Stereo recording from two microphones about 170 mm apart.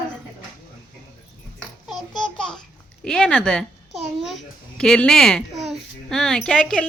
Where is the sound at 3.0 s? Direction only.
5° left (ahead or behind).